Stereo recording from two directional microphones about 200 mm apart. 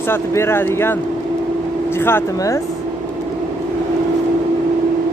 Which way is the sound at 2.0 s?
10° left (ahead or behind).